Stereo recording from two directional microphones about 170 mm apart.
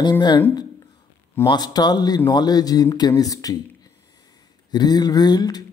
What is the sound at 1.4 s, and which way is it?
Speech, 25° left (ahead or behind).